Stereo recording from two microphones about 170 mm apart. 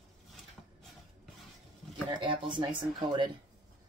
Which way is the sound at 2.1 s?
30° right (ahead or behind).